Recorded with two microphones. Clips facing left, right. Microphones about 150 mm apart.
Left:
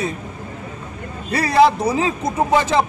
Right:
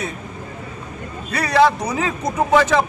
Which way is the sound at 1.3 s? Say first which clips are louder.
Left 1 dB; 30° left (ahead or behind).